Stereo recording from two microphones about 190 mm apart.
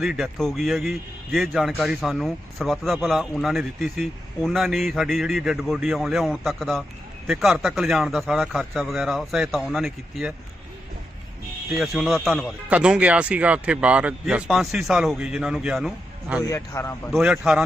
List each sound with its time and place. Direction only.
0.0 s a man's voice: centre (ahead or behind)
11.8 s a man's voice: centre (ahead or behind)
16.4 s a man's voice: 15° left (ahead or behind)
17.1 s a man's voice: 5° right (ahead or behind)